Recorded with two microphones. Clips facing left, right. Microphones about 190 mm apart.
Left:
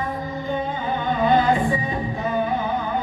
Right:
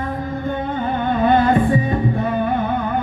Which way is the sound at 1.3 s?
55° right (ahead or behind).